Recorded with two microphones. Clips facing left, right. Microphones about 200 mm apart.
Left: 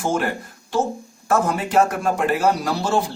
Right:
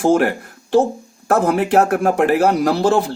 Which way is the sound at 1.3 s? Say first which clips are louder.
Right 5 dB; 65° right (ahead or behind).